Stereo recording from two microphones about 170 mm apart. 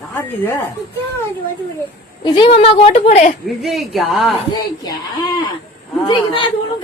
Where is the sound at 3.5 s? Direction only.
Centre (ahead or behind).